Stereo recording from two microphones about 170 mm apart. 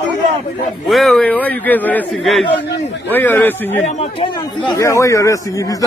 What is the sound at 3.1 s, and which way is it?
Speech, 10° left (ahead or behind).